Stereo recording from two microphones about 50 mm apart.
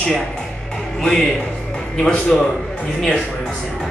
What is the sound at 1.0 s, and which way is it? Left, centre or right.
Music, centre.